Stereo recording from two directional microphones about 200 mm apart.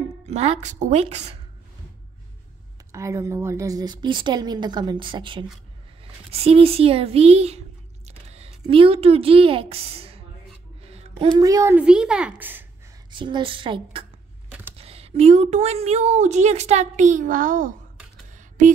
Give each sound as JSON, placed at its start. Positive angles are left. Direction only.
{"t": 0.3, "sound": "a woman's voice", "side_deg": -35}
{"t": 2.9, "sound": "a woman's voice", "side_deg": -15}
{"t": 13.1, "sound": "a woman's voice", "side_deg": -25}